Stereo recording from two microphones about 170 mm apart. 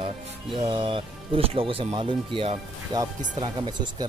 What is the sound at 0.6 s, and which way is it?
Speech, 30° right (ahead or behind).